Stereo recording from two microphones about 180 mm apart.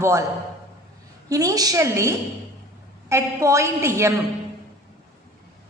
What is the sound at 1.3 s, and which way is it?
A woman's voice, 20° right (ahead or behind).